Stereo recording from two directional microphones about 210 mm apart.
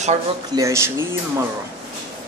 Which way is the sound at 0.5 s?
15° right (ahead or behind).